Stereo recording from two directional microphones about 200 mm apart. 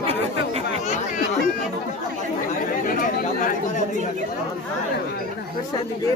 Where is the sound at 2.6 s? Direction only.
45° left (ahead or behind).